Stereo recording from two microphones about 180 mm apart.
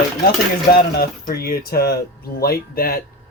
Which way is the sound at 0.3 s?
60° left (ahead or behind).